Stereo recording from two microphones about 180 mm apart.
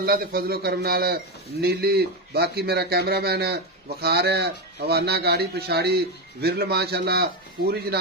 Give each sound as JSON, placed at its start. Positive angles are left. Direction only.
{"t": 0.0, "sound": "a man's voice", "side_deg": -55}